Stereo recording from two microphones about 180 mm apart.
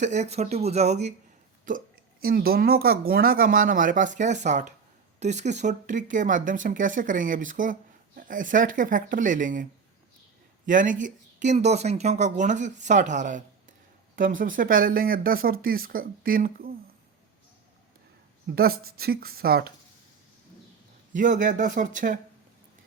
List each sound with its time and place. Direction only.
0.0 s speech: 40° right (ahead or behind)
2.2 s speech: 55° right (ahead or behind)
10.7 s speech: 45° right (ahead or behind)
18.5 s speech: 55° right (ahead or behind)
21.1 s speech: 45° right (ahead or behind)